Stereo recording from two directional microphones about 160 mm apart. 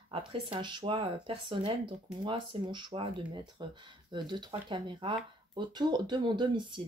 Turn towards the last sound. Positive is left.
turn(degrees=-30)  # may be behind; listen again after turning